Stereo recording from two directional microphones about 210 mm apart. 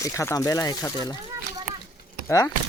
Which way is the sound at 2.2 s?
15° left (ahead or behind).